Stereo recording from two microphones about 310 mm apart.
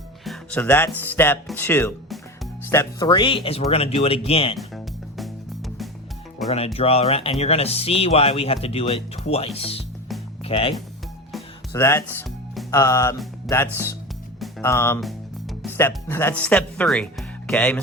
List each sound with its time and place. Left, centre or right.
0.3 s speech: centre
4.5 s music: centre
6.7 s speech: centre
11.3 s music: centre
14.3 s speech: centre